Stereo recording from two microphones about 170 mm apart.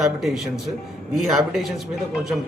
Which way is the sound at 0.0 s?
Centre (ahead or behind).